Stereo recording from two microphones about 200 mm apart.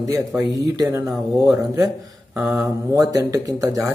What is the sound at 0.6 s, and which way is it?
Speech, 15° right (ahead or behind).